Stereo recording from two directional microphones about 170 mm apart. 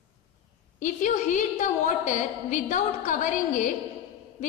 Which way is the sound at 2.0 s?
50° left (ahead or behind).